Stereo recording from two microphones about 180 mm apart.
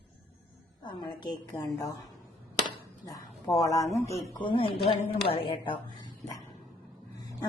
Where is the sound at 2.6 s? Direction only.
20° left (ahead or behind).